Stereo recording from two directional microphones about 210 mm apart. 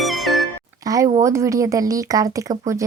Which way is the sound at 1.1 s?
15° right (ahead or behind).